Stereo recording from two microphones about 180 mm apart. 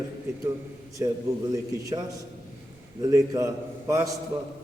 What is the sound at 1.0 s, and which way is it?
A man's voice, 15° right (ahead or behind).